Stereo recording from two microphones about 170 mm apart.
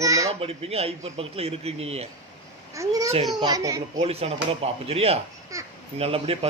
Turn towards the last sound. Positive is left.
turn(degrees=-35)  # may be behind; listen again after turning